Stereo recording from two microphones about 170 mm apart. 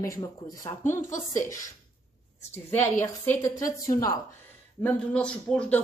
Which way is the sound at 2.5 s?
10° left (ahead or behind).